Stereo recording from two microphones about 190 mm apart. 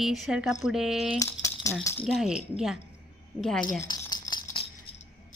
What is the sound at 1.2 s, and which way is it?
Tambourine, 15° left (ahead or behind).